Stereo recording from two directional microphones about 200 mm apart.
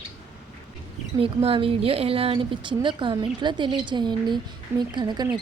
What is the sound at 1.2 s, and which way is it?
Speech, 30° right (ahead or behind).